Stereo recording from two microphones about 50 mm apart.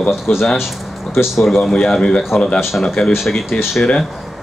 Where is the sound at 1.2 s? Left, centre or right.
Centre.